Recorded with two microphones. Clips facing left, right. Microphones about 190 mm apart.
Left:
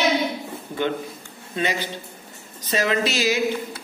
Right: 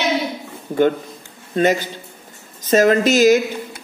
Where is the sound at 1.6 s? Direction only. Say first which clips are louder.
Right 8 dB; 45° right (ahead or behind).